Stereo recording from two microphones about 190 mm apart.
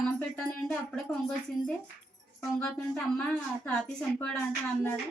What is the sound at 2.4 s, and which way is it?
A woman's voice, 5° left (ahead or behind).